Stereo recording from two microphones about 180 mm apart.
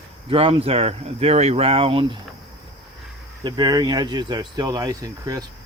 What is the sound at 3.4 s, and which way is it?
Speech, 25° right (ahead or behind).